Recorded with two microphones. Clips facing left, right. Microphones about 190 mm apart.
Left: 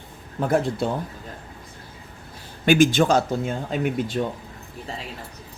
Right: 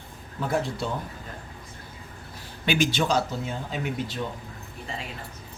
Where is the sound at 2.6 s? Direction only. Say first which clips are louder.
Left 7 dB; 45° left (ahead or behind).